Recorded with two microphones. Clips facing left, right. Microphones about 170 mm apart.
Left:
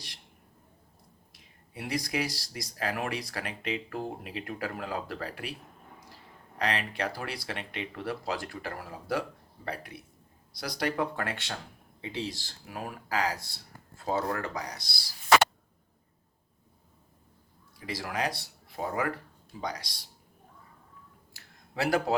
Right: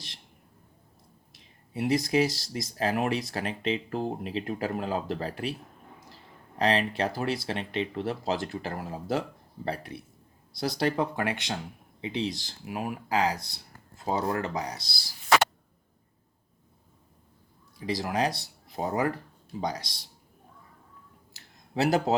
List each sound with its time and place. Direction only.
1.3 s speech: 25° right (ahead or behind)
6.6 s speech: 25° right (ahead or behind)
10.6 s speech: 25° right (ahead or behind)
17.7 s speech: 20° right (ahead or behind)
21.3 s a sound: 20° right (ahead or behind)